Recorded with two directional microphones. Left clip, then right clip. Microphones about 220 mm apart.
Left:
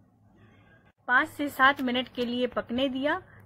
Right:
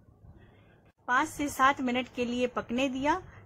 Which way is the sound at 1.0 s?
Centre (ahead or behind).